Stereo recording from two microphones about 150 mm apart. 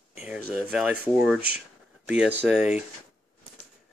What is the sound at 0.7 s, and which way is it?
Speech, 5° right (ahead or behind).